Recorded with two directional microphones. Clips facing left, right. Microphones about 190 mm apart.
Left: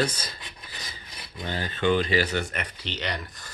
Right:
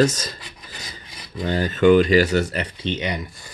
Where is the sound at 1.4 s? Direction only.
45° right (ahead or behind).